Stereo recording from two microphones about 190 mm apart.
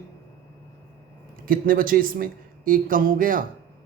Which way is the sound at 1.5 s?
50° right (ahead or behind).